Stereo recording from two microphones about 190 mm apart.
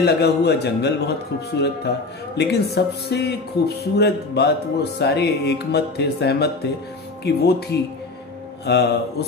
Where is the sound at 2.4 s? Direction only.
60° left (ahead or behind).